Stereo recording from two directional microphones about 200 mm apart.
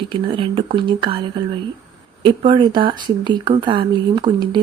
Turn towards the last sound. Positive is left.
turn(degrees=-25)  # may be behind; listen again after turning